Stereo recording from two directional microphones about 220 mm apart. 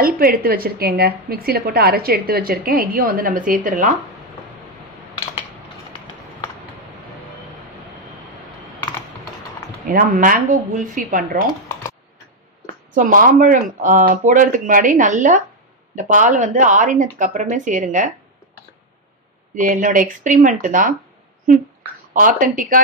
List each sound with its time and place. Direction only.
0.0 s a woman's voice: 40° right (ahead or behind)
9.8 s speech: 40° right (ahead or behind)
12.9 s speech: 40° right (ahead or behind)
19.5 s speech: 35° right (ahead or behind)
22.1 s speech: 35° right (ahead or behind)